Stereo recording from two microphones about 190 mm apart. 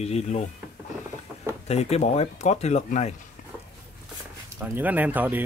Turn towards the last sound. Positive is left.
turn(degrees=-10)  # may be behind; listen again after turning